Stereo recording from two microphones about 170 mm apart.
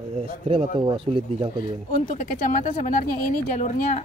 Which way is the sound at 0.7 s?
30° right (ahead or behind).